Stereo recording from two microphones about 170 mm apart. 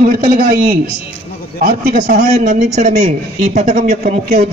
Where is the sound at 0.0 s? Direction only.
60° right (ahead or behind).